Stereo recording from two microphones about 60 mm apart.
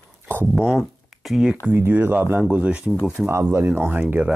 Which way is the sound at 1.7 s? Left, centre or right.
Right.